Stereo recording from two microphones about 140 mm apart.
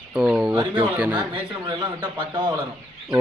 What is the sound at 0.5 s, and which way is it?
A man's voice, 35° right (ahead or behind).